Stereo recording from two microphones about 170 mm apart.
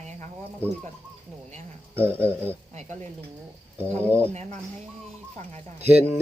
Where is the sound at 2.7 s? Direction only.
40° right (ahead or behind).